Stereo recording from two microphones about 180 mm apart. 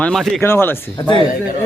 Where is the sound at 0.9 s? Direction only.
25° left (ahead or behind).